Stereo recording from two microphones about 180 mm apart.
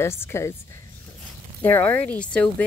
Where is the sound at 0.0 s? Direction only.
15° left (ahead or behind).